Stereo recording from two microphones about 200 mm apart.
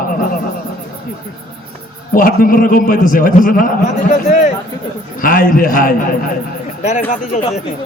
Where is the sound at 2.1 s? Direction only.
45° left (ahead or behind).